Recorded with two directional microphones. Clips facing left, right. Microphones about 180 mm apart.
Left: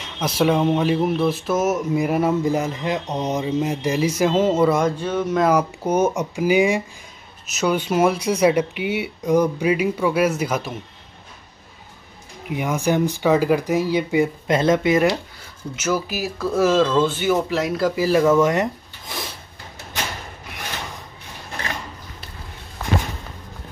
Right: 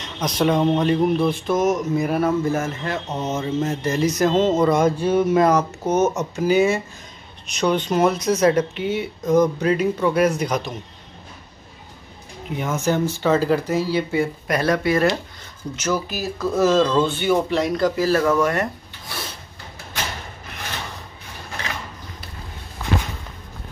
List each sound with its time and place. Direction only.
0.0 s speech: 5° left (ahead or behind); by 5.4 s 10° right (ahead or behind)
5.4 s speech: 10° left (ahead or behind)
12.4 s speech: 15° left (ahead or behind)